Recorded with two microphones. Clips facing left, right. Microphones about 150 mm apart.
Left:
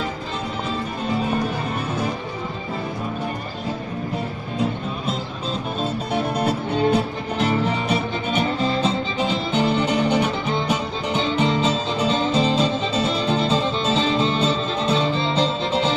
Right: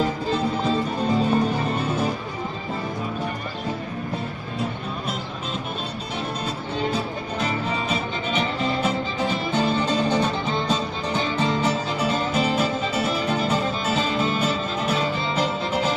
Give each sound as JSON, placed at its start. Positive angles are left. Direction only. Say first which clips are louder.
{"t": 6.1, "sound": "music", "louder": "left 7 dB", "side_deg": 60}
{"t": 8.8, "sound": "music", "louder": "left 2 dB", "side_deg": 20}